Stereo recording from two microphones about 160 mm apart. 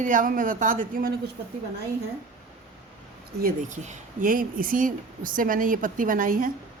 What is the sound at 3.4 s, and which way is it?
Speech, 60° right (ahead or behind).